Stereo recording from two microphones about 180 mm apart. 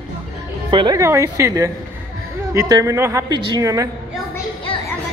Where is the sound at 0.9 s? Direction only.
15° right (ahead or behind).